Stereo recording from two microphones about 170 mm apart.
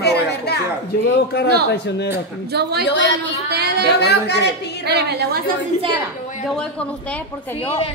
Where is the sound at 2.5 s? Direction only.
75° right (ahead or behind).